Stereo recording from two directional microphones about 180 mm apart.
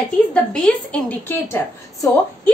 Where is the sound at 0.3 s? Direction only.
5° left (ahead or behind).